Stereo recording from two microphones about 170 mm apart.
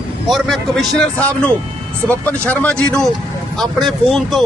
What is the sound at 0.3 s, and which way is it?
Speech, centre (ahead or behind).